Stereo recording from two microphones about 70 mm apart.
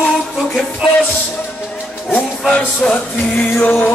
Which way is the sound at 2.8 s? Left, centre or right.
Centre.